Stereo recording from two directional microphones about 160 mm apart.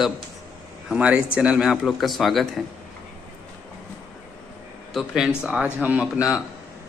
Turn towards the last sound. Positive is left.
turn(degrees=-10)  # may be behind; listen again after turning